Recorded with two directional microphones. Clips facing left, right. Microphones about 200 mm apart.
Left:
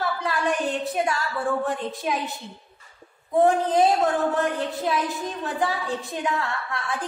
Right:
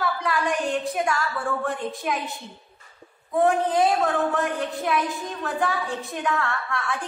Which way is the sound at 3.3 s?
25° left (ahead or behind).